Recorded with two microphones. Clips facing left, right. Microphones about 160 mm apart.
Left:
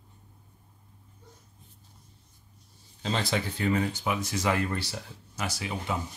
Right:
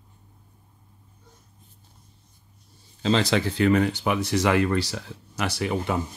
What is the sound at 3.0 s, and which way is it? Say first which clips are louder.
Speech: right 7 dB; 90° right.